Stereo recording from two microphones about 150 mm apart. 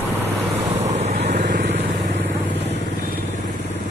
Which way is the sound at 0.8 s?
50° right (ahead or behind).